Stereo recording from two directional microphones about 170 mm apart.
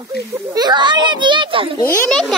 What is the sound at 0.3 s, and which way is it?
A child's voice, 25° right (ahead or behind).